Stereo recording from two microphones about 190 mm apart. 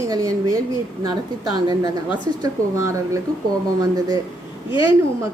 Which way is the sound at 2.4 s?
15° right (ahead or behind).